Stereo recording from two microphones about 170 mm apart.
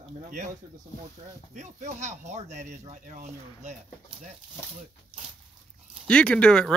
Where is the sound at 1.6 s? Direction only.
45° right (ahead or behind).